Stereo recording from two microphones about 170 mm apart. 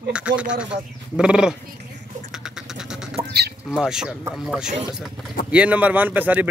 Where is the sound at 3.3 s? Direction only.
70° right (ahead or behind).